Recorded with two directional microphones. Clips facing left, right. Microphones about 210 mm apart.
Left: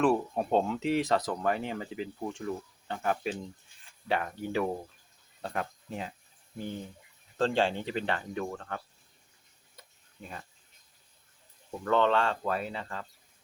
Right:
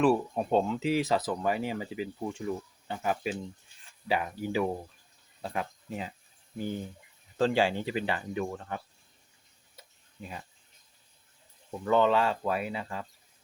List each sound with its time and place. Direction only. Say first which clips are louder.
0.0 s speech: right 1 dB; centre (ahead or behind)
7.3 s speech: right 2 dB; 5° right (ahead or behind)
11.8 s speech: right 1 dB; 10° right (ahead or behind)